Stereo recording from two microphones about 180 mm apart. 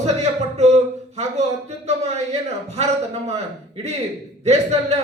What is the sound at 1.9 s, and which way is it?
Speech, 35° right (ahead or behind).